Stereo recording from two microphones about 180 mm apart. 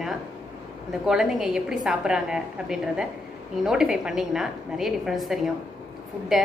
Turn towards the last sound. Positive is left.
turn(degrees=0)  # may be behind; listen again after turning